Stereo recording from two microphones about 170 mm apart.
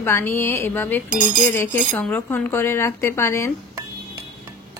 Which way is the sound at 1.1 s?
50° right (ahead or behind).